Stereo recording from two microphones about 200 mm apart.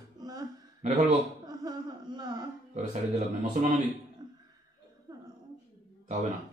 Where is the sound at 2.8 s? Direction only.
40° right (ahead or behind).